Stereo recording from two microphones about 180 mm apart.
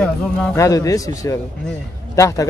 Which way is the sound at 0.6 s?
20° left (ahead or behind).